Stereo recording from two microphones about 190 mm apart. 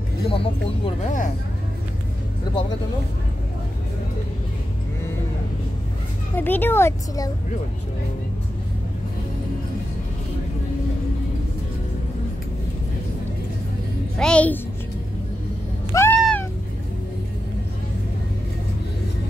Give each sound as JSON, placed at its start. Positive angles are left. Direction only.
{"t": 0.3, "sound": "speech", "side_deg": 30}
{"t": 6.3, "sound": "speech", "side_deg": 10}
{"t": 14.1, "sound": "a child's voice", "side_deg": 5}
{"t": 15.9, "sound": "cat", "side_deg": 15}